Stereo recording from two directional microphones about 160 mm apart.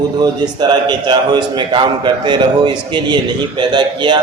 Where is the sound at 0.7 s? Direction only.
25° right (ahead or behind).